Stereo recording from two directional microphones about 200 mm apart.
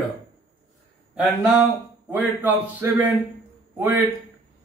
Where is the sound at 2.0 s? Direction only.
10° right (ahead or behind).